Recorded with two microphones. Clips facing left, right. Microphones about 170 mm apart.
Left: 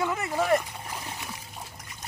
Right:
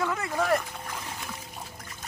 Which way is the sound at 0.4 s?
Centre (ahead or behind).